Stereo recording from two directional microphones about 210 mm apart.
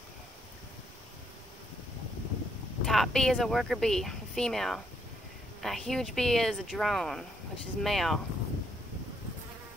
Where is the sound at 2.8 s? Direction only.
Centre (ahead or behind).